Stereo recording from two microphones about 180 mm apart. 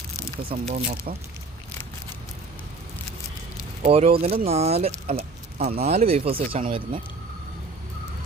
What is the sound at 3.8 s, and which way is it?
Speech, 35° right (ahead or behind).